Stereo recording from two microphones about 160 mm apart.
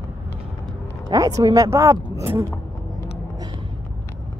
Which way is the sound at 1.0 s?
20° right (ahead or behind).